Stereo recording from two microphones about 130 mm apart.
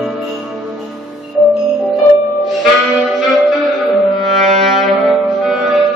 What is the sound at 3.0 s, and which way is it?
Music, centre (ahead or behind).